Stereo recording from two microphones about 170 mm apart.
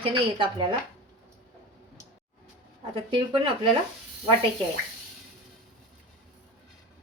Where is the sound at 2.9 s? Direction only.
30° right (ahead or behind).